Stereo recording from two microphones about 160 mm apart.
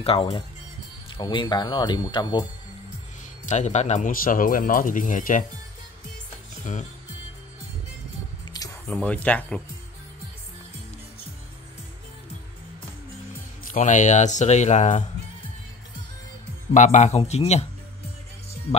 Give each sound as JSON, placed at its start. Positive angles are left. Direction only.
{"t": 0.0, "sound": "speech", "side_deg": 35}
{"t": 3.4, "sound": "speech", "side_deg": 45}
{"t": 6.6, "sound": "music", "side_deg": 50}
{"t": 8.8, "sound": "speech", "side_deg": 10}
{"t": 13.7, "sound": "speech", "side_deg": 50}
{"t": 16.7, "sound": "speech", "side_deg": 50}